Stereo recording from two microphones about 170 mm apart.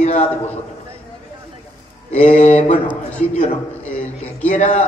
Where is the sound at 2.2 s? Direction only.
45° left (ahead or behind).